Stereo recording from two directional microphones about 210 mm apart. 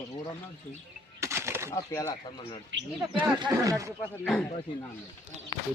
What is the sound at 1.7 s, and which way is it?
Speech, 15° left (ahead or behind).